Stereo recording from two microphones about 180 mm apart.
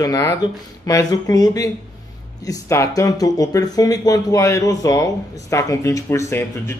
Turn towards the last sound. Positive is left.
turn(degrees=15)  # may be behind; listen again after turning